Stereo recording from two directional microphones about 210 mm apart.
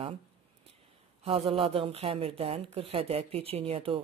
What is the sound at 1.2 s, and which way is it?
Speech, 25° right (ahead or behind).